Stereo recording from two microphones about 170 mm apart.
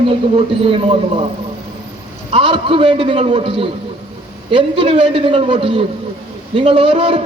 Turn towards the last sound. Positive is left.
turn(degrees=-35)  # may be behind; listen again after turning